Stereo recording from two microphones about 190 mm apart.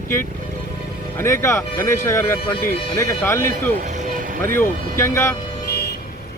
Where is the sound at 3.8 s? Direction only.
40° right (ahead or behind).